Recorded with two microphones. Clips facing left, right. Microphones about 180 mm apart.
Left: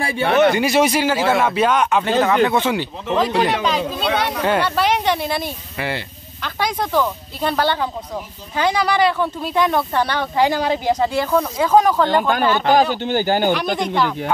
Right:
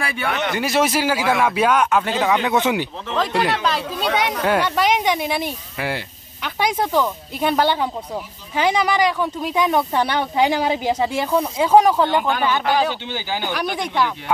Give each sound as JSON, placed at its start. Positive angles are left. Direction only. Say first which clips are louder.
{"t": 0.0, "sound": "speech", "louder": "left 5 dB", "side_deg": 30}
{"t": 0.6, "sound": "speech", "louder": "left 3 dB", "side_deg": 0}
{"t": 2.5, "sound": "speech", "louder": "even", "side_deg": -15}
{"t": 3.2, "sound": "speech", "louder": "left 2 dB", "side_deg": 0}
{"t": 12.2, "sound": "speech", "louder": "left 3 dB", "side_deg": 45}
{"t": 13.6, "sound": "speech", "louder": "left 2 dB", "side_deg": -10}